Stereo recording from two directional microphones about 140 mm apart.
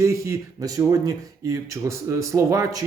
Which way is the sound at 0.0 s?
20° right (ahead or behind).